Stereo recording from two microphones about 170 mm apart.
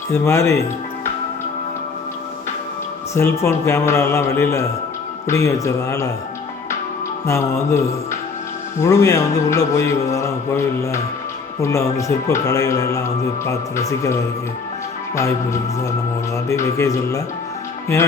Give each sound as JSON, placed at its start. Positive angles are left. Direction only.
{"t": 0.1, "sound": "a man's voice", "side_deg": 15}
{"t": 3.2, "sound": "a man's voice", "side_deg": 15}
{"t": 7.3, "sound": "a man's voice", "side_deg": 15}
{"t": 16.5, "sound": "a man's voice", "side_deg": 15}